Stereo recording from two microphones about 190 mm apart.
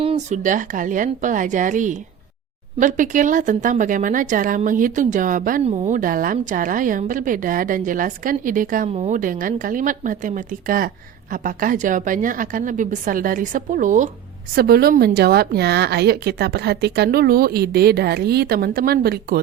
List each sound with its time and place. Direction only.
0.0 s a sound: 30° right (ahead or behind)
0.4 s a woman's voice: 45° right (ahead or behind)
8.9 s a woman's voice: 35° right (ahead or behind)
14.5 s a woman's voice: 55° right (ahead or behind)